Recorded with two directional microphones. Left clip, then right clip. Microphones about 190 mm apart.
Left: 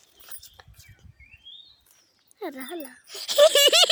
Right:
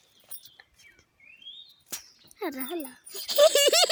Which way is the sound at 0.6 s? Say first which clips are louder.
Left 3 dB; 40° left (ahead or behind).